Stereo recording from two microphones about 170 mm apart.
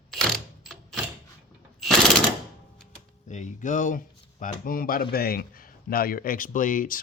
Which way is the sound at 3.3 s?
45° left (ahead or behind).